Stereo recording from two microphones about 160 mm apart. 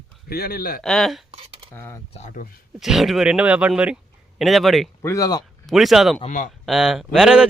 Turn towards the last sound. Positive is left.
turn(degrees=-5)  # may be behind; listen again after turning